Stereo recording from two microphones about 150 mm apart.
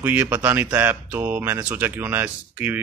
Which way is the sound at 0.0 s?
15° right (ahead or behind).